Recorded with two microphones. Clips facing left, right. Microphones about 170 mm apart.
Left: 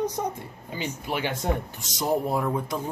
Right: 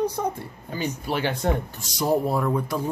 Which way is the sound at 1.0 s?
15° left (ahead or behind).